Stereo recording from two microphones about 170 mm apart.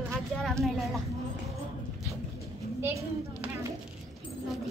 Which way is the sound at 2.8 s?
15° right (ahead or behind).